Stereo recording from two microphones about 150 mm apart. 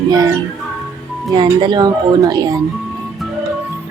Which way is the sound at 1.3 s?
30° right (ahead or behind).